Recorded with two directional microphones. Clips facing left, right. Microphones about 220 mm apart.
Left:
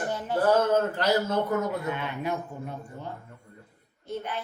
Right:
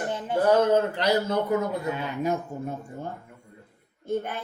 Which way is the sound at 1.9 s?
40° right (ahead or behind).